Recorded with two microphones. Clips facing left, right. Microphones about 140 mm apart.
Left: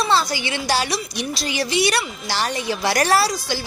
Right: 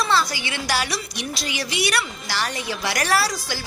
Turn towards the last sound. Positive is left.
turn(degrees=25)  # may be behind; listen again after turning